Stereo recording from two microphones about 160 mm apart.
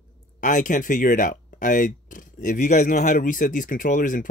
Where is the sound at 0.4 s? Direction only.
55° left (ahead or behind).